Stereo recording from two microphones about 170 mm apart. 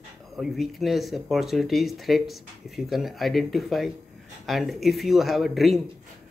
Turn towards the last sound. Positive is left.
turn(degrees=0)  # may be behind; listen again after turning